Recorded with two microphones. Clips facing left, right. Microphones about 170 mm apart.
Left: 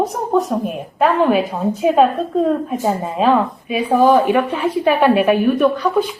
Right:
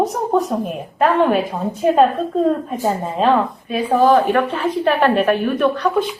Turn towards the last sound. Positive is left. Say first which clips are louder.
# left 2 dB
turn(degrees=5)  # may be behind; listen again after turning